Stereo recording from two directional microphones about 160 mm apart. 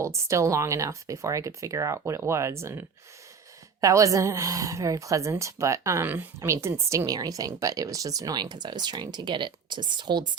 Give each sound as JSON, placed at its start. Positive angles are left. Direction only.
{"t": 0.0, "sound": "a woman's voice", "side_deg": -20}